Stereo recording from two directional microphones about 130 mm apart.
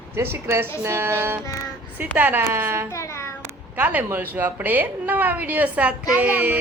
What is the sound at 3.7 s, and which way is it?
A woman's voice, 15° right (ahead or behind).